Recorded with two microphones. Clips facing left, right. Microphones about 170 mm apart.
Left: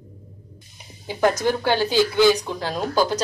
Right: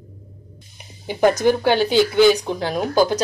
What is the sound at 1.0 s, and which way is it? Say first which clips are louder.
Speech: right 4 dB; 20° right (ahead or behind).